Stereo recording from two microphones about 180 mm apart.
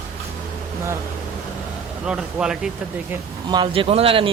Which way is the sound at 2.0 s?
5° right (ahead or behind).